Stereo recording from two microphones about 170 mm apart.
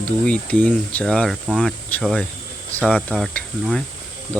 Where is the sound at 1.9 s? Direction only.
5° left (ahead or behind).